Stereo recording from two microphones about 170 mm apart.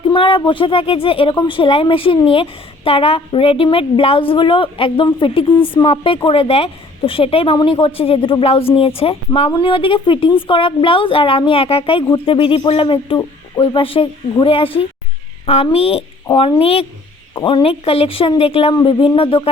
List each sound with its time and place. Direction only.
0.1 s speech: 30° left (ahead or behind)